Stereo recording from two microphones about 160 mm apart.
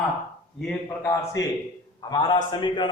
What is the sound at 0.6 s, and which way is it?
Speech, 5° left (ahead or behind).